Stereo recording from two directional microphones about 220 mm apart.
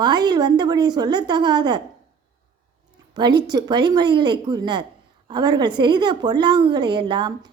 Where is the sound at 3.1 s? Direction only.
20° right (ahead or behind).